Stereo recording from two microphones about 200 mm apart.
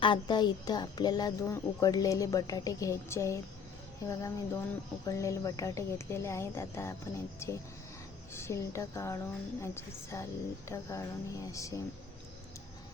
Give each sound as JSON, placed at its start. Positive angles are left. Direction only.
{"t": 0.0, "sound": "a woman's voice", "side_deg": 25}